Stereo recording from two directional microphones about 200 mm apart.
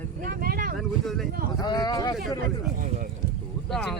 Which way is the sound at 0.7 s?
Centre (ahead or behind).